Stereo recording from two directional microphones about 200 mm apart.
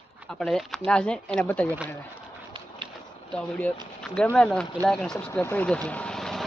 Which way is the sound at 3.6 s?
5° left (ahead or behind).